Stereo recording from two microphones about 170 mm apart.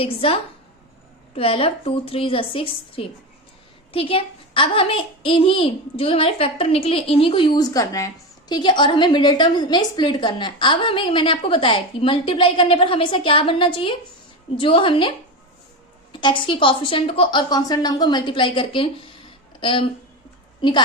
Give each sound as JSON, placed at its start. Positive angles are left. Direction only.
{"t": 0.0, "sound": "a child's voice", "side_deg": 35}
{"t": 1.4, "sound": "a child's voice", "side_deg": 35}
{"t": 16.2, "sound": "a woman's voice", "side_deg": 30}